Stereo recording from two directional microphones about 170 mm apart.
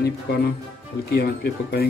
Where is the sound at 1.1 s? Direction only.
70° left (ahead or behind).